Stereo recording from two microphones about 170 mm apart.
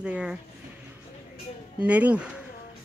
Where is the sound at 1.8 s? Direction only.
10° right (ahead or behind).